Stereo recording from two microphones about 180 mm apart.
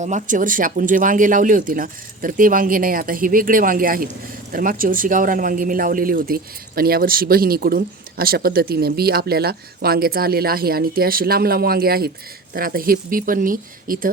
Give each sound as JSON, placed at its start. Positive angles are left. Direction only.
{"t": 0.0, "sound": "speech", "side_deg": -45}